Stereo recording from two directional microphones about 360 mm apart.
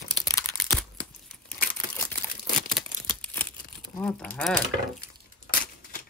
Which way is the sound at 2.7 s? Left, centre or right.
Centre.